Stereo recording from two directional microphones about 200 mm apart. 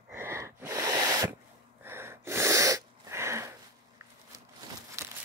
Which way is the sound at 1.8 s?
10° right (ahead or behind).